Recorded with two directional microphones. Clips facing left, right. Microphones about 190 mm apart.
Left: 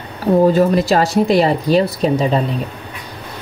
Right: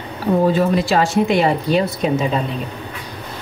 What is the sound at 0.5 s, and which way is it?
Speech, 40° left (ahead or behind).